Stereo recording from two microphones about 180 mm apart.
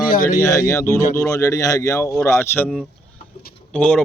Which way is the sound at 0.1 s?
50° left (ahead or behind).